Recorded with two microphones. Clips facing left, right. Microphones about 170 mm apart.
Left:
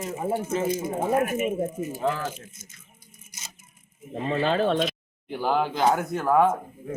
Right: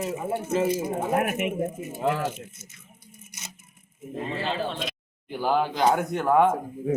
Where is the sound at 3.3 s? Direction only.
65° right (ahead or behind).